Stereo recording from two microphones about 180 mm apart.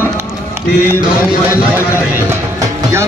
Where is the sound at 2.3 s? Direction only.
15° right (ahead or behind).